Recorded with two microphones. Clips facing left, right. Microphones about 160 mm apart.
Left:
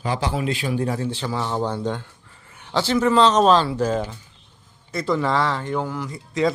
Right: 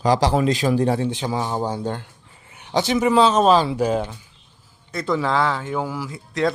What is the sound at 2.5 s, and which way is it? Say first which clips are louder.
A man's voice: right 1 dB; 20° right (ahead or behind).